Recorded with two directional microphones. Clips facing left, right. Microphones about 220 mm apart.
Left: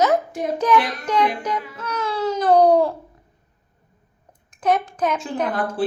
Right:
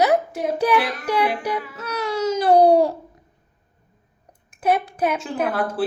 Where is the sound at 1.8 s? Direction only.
40° right (ahead or behind).